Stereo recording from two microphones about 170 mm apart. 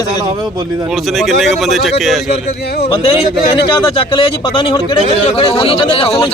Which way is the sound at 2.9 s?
30° left (ahead or behind).